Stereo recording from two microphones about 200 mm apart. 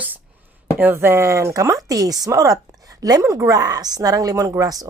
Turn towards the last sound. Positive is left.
turn(degrees=-15)  # may be behind; listen again after turning